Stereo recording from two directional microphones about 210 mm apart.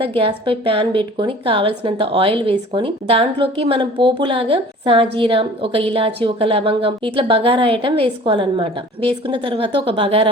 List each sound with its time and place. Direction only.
0.2 s a woman's voice: 25° right (ahead or behind)